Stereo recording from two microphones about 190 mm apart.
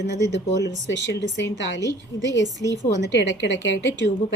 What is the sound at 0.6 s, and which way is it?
Speech, 70° left (ahead or behind).